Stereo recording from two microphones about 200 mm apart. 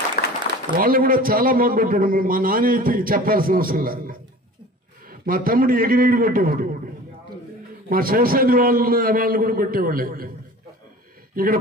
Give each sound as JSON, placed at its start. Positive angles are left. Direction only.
{"t": 0.2, "sound": "a sound", "side_deg": 45}
{"t": 0.7, "sound": "a man's voice", "side_deg": -45}
{"t": 5.2, "sound": "a man's voice", "side_deg": -45}
{"t": 7.9, "sound": "a man's voice", "side_deg": -45}
{"t": 11.4, "sound": "a man's voice", "side_deg": -45}